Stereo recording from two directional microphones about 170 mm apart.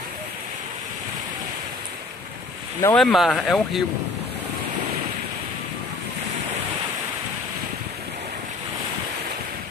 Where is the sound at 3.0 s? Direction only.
Centre (ahead or behind).